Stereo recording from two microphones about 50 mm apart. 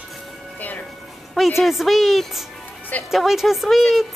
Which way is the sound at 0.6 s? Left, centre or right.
Left.